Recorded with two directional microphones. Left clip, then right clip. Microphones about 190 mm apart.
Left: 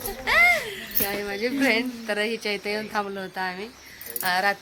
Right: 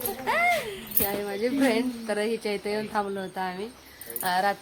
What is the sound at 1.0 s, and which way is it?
A woman's voice, 10° left (ahead or behind).